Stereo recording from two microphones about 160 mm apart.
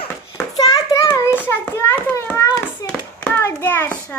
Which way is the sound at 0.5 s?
25° left (ahead or behind).